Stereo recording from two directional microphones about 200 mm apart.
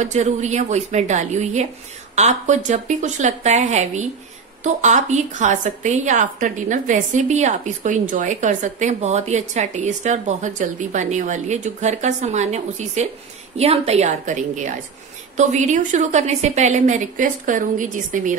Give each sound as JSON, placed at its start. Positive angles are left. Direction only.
{"t": 0.0, "sound": "a woman's voice", "side_deg": -35}